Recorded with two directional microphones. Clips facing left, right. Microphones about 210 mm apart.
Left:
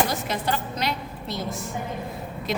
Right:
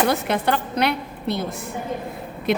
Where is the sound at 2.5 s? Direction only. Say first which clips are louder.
Right 7 dB; 60° right (ahead or behind).